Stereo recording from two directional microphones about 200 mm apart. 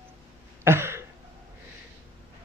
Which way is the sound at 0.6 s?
10° right (ahead or behind).